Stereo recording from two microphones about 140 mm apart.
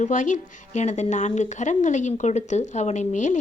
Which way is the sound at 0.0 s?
65° left (ahead or behind).